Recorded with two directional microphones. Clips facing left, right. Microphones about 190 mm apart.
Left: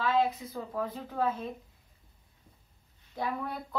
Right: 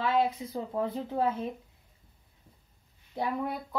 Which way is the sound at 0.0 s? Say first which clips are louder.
Right 1 dB; 20° right (ahead or behind).